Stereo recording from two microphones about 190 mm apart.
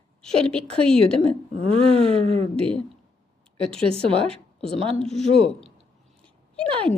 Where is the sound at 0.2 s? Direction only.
5° left (ahead or behind).